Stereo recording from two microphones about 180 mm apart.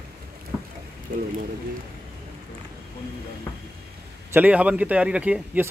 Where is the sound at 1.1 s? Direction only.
55° right (ahead or behind).